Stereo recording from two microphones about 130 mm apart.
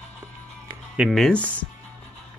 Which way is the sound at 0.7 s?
10° right (ahead or behind).